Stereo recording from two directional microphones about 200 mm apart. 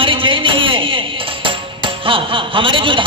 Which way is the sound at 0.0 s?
25° right (ahead or behind).